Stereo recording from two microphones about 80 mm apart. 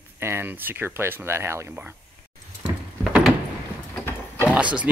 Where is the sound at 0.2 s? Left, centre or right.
Right.